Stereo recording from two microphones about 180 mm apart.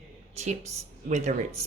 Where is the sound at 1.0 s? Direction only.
40° right (ahead or behind).